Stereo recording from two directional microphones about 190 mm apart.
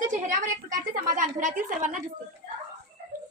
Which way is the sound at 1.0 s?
45° right (ahead or behind).